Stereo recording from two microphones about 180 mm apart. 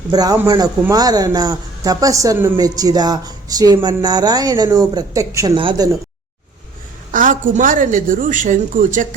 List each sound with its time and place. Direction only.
0.1 s speech: 20° right (ahead or behind)
7.1 s a woman's voice: 45° right (ahead or behind)